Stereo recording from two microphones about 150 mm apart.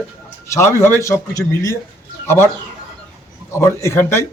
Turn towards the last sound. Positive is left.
turn(degrees=15)  # may be behind; listen again after turning